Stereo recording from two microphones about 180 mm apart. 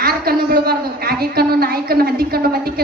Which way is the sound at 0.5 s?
60° right (ahead or behind).